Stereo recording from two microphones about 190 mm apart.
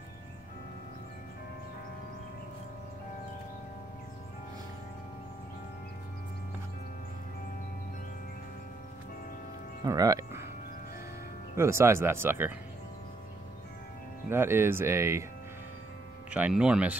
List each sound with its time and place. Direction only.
9.8 s music: 20° right (ahead or behind)
11.5 s speech: 15° right (ahead or behind)
14.3 s speech: 10° right (ahead or behind)
16.3 s speech: 5° right (ahead or behind)